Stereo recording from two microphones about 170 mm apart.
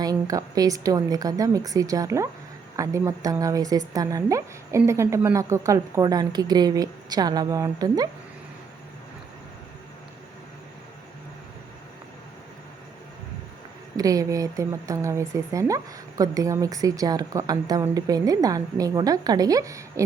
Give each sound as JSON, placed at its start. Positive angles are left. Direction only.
{"t": 0.0, "sound": "speech", "side_deg": -20}
{"t": 13.9, "sound": "speech", "side_deg": -20}